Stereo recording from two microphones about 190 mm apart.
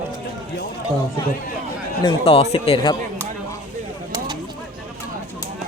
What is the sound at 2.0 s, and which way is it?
Speech, 30° left (ahead or behind).